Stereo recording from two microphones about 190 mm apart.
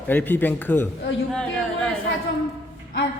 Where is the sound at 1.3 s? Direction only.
5° left (ahead or behind).